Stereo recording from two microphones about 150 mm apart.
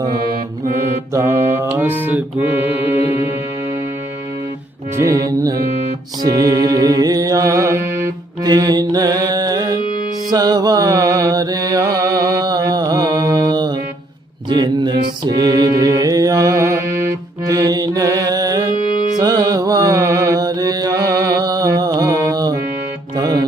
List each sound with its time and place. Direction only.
1.1 s mantra: 20° right (ahead or behind)
4.9 s music: 20° right (ahead or behind)
10.3 s mantra: 25° right (ahead or behind)
23.1 s music: 25° right (ahead or behind)